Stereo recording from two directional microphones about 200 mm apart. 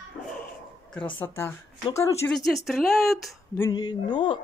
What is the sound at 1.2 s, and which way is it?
A woman's voice, 10° left (ahead or behind).